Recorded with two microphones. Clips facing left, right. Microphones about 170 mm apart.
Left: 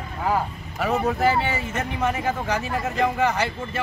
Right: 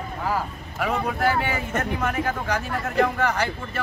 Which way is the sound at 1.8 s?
10° left (ahead or behind).